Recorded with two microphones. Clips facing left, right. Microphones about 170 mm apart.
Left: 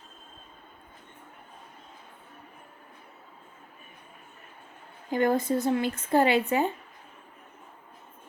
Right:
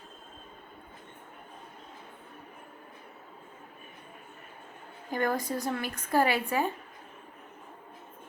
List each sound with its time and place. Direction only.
5.1 s a woman's voice: 25° left (ahead or behind)